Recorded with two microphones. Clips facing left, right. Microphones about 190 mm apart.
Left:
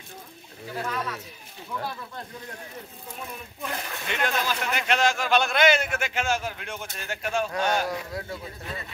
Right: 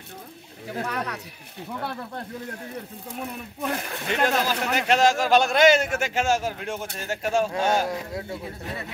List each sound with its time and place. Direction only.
0.8 s speech: 65° right (ahead or behind)
3.6 s speech: 40° right (ahead or behind)
7.4 s a man's voice: 25° right (ahead or behind)